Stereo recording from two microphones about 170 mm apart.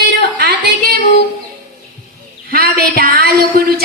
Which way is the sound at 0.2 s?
65° right (ahead or behind).